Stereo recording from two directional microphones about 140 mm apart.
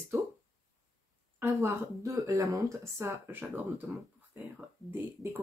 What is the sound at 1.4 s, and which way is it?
Speech, 20° right (ahead or behind).